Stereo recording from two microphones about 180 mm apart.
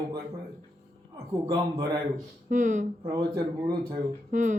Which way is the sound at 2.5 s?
45° right (ahead or behind).